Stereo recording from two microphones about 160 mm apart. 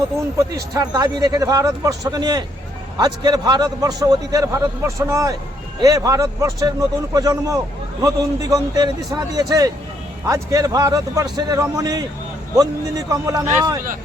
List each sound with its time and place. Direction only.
0.5 s a man's voice: 25° right (ahead or behind)
13.1 s a man's voice: 20° right (ahead or behind)